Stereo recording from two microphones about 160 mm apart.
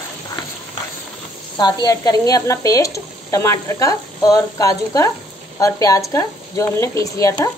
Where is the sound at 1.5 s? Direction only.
25° left (ahead or behind).